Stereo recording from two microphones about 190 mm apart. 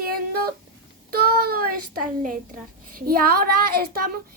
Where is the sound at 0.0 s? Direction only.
50° right (ahead or behind).